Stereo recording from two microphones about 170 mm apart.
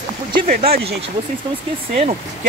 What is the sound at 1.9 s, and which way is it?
Speech, 40° right (ahead or behind).